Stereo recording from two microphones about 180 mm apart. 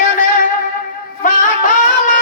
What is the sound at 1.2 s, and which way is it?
Music, 45° left (ahead or behind).